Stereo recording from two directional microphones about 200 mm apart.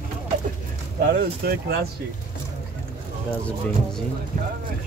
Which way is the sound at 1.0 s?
50° right (ahead or behind).